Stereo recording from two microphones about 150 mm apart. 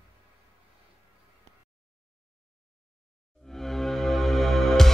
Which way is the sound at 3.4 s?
Centre (ahead or behind).